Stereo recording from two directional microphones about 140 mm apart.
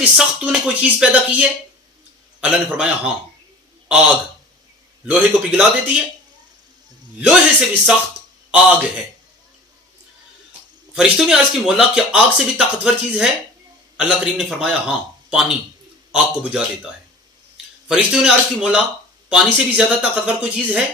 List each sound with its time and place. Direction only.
0.0 s speech: 10° right (ahead or behind)
7.2 s speech: 5° right (ahead or behind)
10.9 s a man's voice: 5° right (ahead or behind)
17.8 s speech: 5° right (ahead or behind)